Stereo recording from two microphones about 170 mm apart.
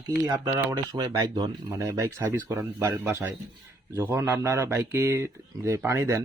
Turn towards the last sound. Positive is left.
turn(degrees=-15)  # may be behind; listen again after turning